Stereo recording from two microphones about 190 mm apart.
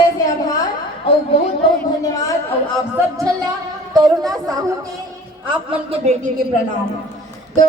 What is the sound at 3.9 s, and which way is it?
Speech, 20° right (ahead or behind).